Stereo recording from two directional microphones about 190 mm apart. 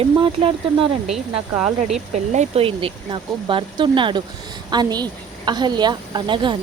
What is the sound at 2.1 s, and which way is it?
Speech, 35° right (ahead or behind).